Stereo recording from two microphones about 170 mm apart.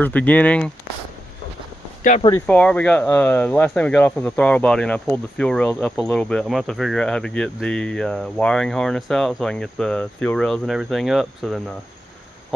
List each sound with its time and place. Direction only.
0.0 s speech: 10° left (ahead or behind)
2.4 s speech: 5° left (ahead or behind)